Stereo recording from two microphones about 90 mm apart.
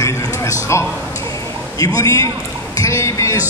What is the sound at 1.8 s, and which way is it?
A man's voice, 45° left (ahead or behind).